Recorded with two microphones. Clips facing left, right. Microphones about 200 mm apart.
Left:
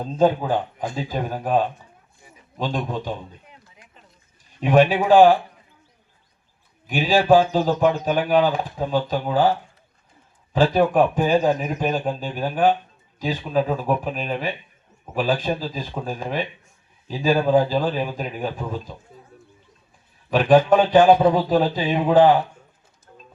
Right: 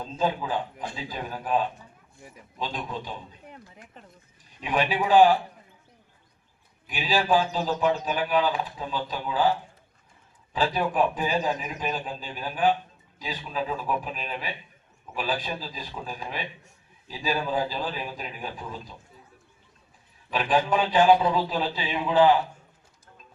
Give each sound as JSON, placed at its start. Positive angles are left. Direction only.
{"t": 0.0, "sound": "a man's voice", "side_deg": 50}
{"t": 3.5, "sound": "a sound", "side_deg": -50}
{"t": 4.6, "sound": "a man's voice", "side_deg": 45}
{"t": 6.8, "sound": "a man's voice", "side_deg": 45}
{"t": 20.3, "sound": "a man's voice", "side_deg": 45}